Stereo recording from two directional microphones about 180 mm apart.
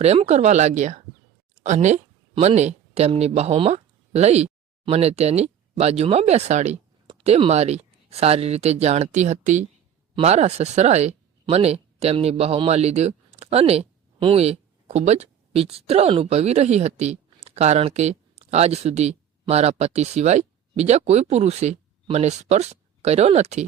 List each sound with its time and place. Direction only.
0.0 s speech: 35° right (ahead or behind)